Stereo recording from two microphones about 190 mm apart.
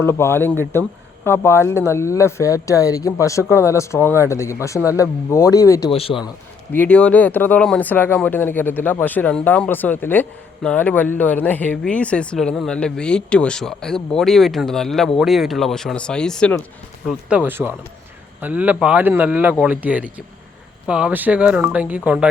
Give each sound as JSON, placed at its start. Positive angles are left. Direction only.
{"t": 0.0, "sound": "speech", "side_deg": 15}
{"t": 5.9, "sound": "speech", "side_deg": 30}
{"t": 6.7, "sound": "speech", "side_deg": 5}